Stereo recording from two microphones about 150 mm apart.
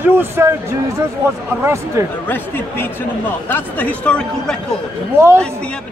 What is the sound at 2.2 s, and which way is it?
Speech, 15° left (ahead or behind).